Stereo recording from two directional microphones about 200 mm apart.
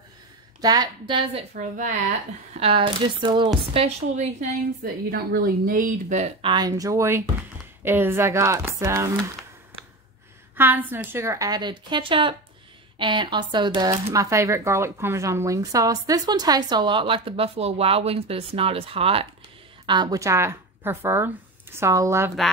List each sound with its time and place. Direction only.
0.6 s speech: 20° right (ahead or behind)
1.5 s speech: 40° right (ahead or behind)
2.5 s speech: 25° right (ahead or behind)
5.1 s speech: 45° right (ahead or behind)
6.5 s speech: 20° right (ahead or behind)
10.5 s speech: 10° right (ahead or behind)